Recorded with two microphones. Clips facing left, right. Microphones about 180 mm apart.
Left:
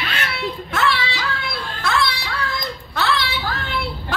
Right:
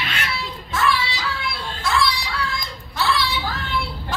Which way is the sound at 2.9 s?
65° left (ahead or behind).